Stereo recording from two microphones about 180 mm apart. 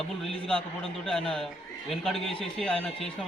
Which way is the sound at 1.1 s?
5° left (ahead or behind).